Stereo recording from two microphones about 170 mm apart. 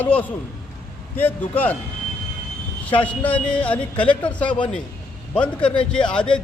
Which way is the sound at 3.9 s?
30° left (ahead or behind).